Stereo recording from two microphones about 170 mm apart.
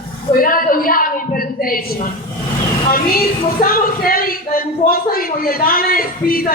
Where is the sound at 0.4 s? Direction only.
55° left (ahead or behind).